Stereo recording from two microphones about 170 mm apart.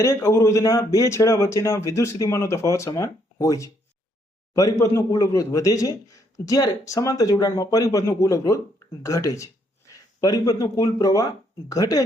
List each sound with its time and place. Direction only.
0.0 s speech: 15° left (ahead or behind)